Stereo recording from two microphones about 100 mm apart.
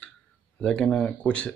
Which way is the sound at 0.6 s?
10° left (ahead or behind).